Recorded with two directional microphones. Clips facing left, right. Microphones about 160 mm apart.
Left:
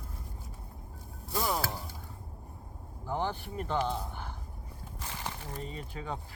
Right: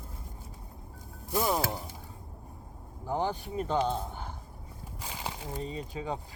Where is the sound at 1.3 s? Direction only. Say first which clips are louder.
Right 3 dB; 20° right (ahead or behind).